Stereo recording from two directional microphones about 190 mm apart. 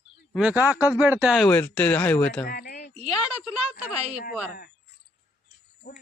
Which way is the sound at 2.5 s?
50° left (ahead or behind).